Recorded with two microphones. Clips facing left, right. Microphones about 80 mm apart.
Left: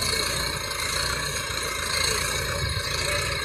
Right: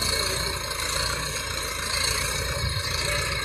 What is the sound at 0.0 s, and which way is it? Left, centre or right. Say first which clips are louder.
Vehicle: even; centre.